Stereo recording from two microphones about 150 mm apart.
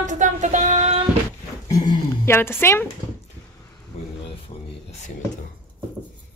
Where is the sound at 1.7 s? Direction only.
25° left (ahead or behind).